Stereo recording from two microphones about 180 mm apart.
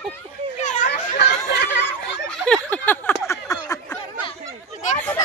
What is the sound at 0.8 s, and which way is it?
Chatter, 70° left (ahead or behind).